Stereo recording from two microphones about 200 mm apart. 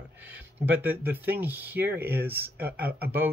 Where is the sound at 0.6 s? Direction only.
10° right (ahead or behind).